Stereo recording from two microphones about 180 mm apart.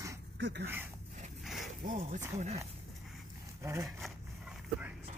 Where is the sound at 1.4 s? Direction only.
Centre (ahead or behind).